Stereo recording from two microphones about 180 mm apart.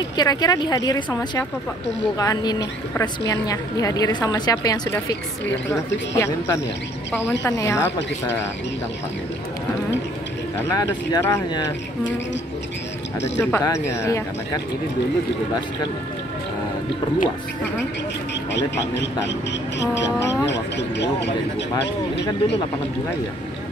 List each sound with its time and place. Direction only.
0.2 s a woman's voice: 20° left (ahead or behind)
10.7 s a woman's voice: 20° left (ahead or behind)
13.4 s speech: 15° left (ahead or behind)
18.5 s speech: 80° left
20.4 s speech: 75° left (ahead or behind)